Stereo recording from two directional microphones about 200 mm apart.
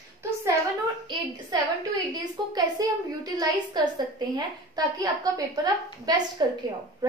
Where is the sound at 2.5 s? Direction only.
20° right (ahead or behind).